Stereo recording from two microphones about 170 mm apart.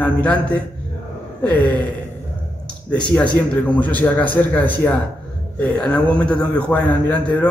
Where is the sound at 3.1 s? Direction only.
5° left (ahead or behind).